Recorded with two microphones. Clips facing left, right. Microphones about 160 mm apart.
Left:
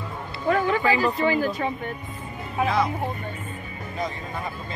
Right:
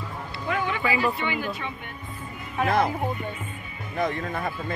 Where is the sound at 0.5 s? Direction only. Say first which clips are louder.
Left 5 dB; 40° left (ahead or behind).